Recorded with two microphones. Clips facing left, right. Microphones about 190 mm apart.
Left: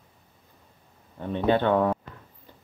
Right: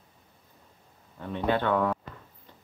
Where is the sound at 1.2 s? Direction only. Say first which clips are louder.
Left 4 dB; 25° left (ahead or behind).